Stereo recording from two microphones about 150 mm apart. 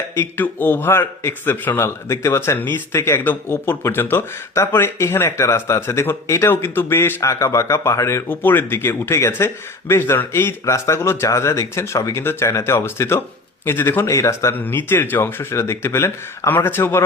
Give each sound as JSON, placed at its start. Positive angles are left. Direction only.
{"t": 0.2, "sound": "a man's voice", "side_deg": 15}